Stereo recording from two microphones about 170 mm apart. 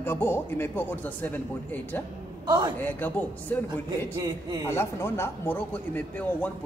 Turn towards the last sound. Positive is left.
turn(degrees=10)  # may be behind; listen again after turning